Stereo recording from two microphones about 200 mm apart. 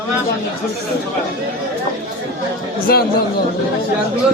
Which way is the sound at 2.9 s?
50° left (ahead or behind).